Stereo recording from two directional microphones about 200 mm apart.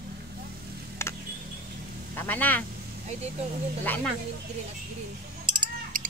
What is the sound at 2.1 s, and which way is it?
Speech, 10° left (ahead or behind).